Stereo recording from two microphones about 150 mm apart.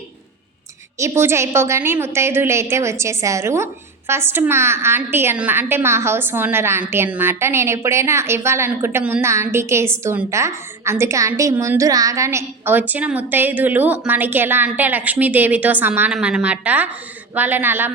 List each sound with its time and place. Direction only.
0.9 s a woman's voice: 20° right (ahead or behind)